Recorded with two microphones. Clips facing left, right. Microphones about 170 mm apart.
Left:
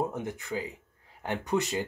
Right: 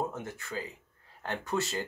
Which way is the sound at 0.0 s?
15° left (ahead or behind).